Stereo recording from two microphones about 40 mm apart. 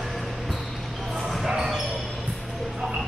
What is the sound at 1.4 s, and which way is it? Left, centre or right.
Basketball bounce, centre.